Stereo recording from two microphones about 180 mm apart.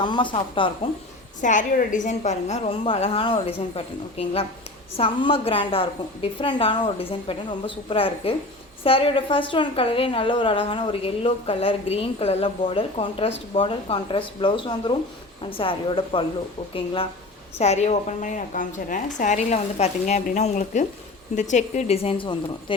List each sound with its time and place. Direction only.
0.0 s speech: 25° left (ahead or behind)
1.4 s a woman's voice: 45° left (ahead or behind)